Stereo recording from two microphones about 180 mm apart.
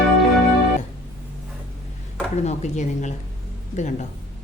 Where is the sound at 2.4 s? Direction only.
40° left (ahead or behind).